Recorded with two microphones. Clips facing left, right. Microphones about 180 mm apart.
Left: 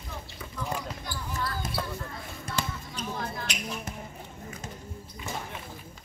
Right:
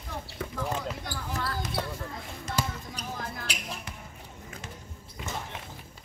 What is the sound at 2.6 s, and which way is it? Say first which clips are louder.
Basketball bounce: right 1 dB; 35° right (ahead or behind).